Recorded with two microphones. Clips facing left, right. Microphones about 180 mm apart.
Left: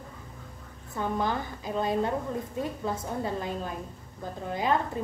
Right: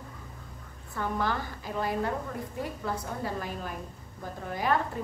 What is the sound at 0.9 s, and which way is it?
A woman's voice, 20° left (ahead or behind).